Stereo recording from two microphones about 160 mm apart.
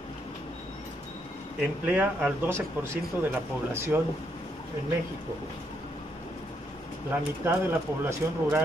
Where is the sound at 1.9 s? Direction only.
10° right (ahead or behind).